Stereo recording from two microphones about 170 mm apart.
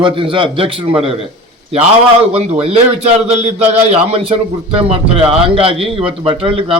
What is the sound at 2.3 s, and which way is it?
A man's voice, 35° right (ahead or behind).